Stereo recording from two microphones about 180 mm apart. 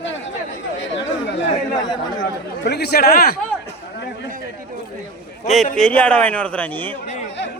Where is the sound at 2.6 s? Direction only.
65° left (ahead or behind).